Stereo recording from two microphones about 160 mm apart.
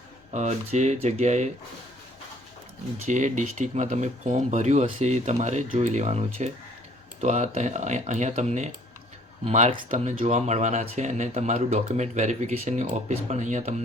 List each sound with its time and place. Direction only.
0.3 s speech: 45° right (ahead or behind)
3.1 s speech: 50° right (ahead or behind)